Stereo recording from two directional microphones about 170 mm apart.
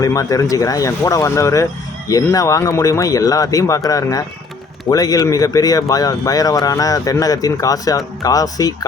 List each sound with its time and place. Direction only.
0.0 s speech: 20° left (ahead or behind)